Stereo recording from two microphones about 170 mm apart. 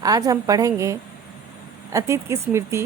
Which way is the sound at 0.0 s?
20° right (ahead or behind).